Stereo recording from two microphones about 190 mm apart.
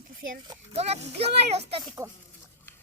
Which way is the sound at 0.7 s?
30° right (ahead or behind).